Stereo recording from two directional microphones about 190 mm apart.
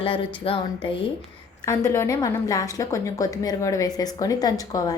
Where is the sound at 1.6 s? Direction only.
15° left (ahead or behind).